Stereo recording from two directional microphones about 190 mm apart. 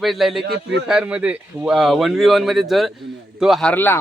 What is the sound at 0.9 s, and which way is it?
A man's voice, 5° right (ahead or behind).